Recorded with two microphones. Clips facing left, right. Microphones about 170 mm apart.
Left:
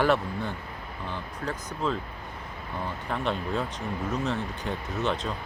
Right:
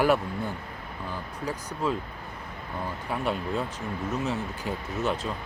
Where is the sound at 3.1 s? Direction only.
5° right (ahead or behind).